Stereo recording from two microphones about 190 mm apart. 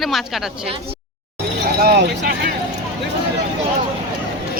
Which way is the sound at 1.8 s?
55° right (ahead or behind).